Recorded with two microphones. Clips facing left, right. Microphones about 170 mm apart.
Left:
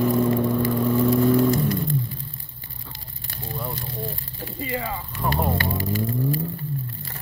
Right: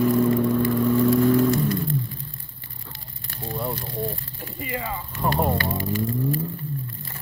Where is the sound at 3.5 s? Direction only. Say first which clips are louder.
Right 3 dB; 5° right (ahead or behind).